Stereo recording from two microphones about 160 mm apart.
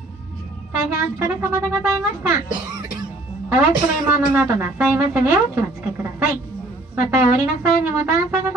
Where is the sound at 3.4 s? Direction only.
15° right (ahead or behind).